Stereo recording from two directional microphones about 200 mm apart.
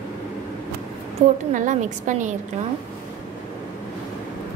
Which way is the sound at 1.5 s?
40° right (ahead or behind).